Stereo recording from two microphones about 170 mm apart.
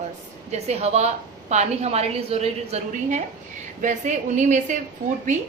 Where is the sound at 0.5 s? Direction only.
40° right (ahead or behind).